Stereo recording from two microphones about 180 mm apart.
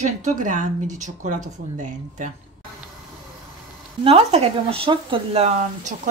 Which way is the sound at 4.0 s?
35° right (ahead or behind).